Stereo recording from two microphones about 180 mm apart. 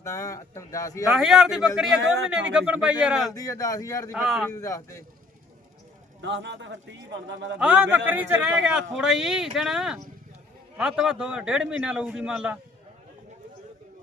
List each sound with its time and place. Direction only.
0.0 s speech: 15° left (ahead or behind)
1.1 s a man's voice: centre (ahead or behind)
3.3 s a man's voice: 20° left (ahead or behind)
4.1 s a man's voice: 5° right (ahead or behind)
4.4 s speech: 15° left (ahead or behind)
6.2 s a man's voice: 85° right
7.6 s a man's voice: 5° right (ahead or behind)